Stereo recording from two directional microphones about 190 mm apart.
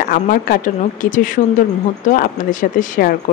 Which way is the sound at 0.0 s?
45° left (ahead or behind).